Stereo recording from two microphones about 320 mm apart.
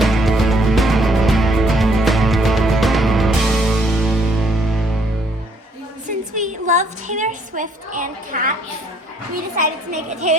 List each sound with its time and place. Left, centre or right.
0.0 s music: centre
6.3 s a sound: right
9.6 s a woman's voice: right